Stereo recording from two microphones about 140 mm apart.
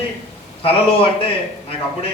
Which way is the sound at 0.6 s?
40° left (ahead or behind).